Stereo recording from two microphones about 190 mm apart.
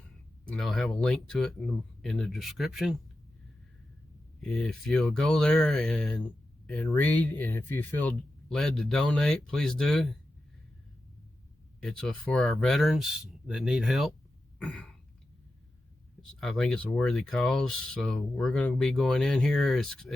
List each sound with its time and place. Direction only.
0.5 s speech: centre (ahead or behind)
4.4 s speech: centre (ahead or behind)
11.8 s speech: centre (ahead or behind)
14.6 s throat clearing: 5° left (ahead or behind)
16.4 s speech: 5° left (ahead or behind)